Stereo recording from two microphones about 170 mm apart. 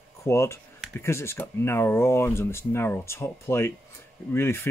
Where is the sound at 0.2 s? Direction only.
15° left (ahead or behind).